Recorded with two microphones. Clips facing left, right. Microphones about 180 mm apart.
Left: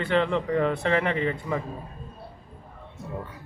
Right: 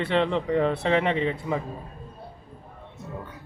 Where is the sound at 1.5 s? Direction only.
15° right (ahead or behind).